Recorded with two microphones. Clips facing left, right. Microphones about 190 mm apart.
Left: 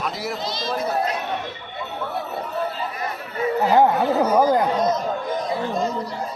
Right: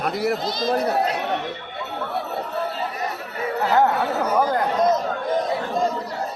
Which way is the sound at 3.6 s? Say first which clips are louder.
Left 2 dB; 10° left (ahead or behind).